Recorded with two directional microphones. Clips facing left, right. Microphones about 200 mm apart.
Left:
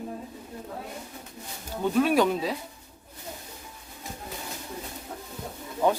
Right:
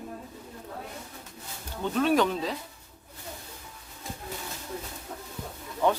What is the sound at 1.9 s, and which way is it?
Speech, 10° left (ahead or behind).